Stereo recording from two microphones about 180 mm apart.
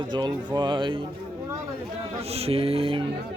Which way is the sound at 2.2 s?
35° right (ahead or behind).